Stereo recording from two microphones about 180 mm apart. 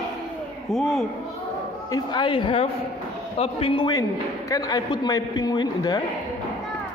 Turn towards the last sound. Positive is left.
turn(degrees=20)  # may be behind; listen again after turning